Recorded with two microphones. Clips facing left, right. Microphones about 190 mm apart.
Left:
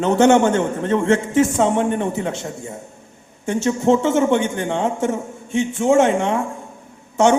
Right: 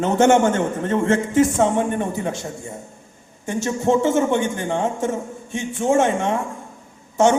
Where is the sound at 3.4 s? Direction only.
15° left (ahead or behind).